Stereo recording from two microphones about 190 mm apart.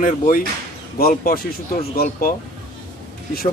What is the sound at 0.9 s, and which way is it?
Speech, 50° left (ahead or behind).